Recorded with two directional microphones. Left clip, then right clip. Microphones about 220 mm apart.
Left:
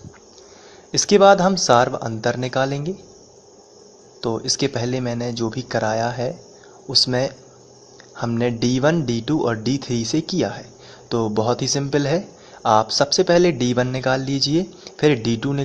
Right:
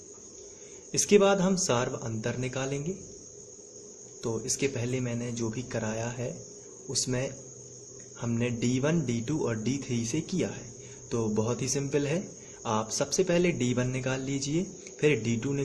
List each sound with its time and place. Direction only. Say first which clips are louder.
0.9 s speech: left 10 dB; 15° left (ahead or behind)
4.5 s speech: left 8 dB; 15° left (ahead or behind)
8.1 s speech: left 10 dB; 15° left (ahead or behind)